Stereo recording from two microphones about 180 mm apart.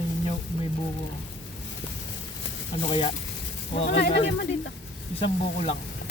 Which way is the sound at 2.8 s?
30° left (ahead or behind).